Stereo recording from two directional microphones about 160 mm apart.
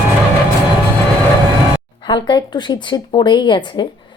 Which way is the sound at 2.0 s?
30° left (ahead or behind).